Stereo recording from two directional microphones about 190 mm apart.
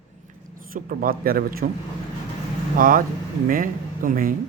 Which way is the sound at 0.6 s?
45° right (ahead or behind).